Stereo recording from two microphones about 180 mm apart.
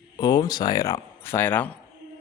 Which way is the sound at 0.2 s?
20° left (ahead or behind).